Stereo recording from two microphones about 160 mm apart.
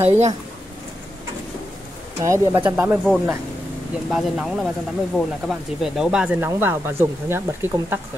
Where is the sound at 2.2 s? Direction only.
20° right (ahead or behind).